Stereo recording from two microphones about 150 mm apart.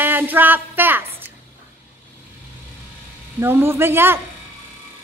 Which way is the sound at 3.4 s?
15° right (ahead or behind).